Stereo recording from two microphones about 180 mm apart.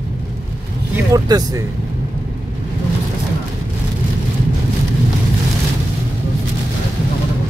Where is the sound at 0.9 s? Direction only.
20° right (ahead or behind).